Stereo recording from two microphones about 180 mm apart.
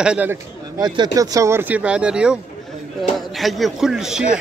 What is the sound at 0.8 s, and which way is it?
A man's voice, 25° right (ahead or behind).